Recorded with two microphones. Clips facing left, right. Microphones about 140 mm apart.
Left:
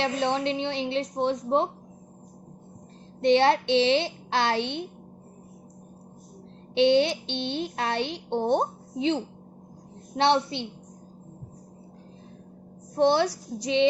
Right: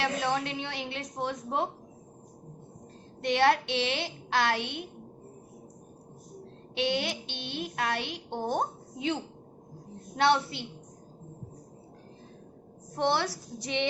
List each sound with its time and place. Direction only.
0.0 s a woman's voice: 25° left (ahead or behind)
3.2 s a woman's voice: 25° left (ahead or behind)
6.7 s a woman's voice: 25° left (ahead or behind)
13.1 s a woman's voice: 20° left (ahead or behind)